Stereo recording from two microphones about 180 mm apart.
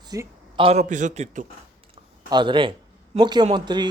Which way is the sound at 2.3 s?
25° right (ahead or behind).